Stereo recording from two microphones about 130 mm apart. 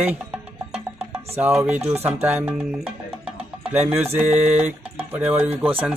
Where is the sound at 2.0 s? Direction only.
15° right (ahead or behind).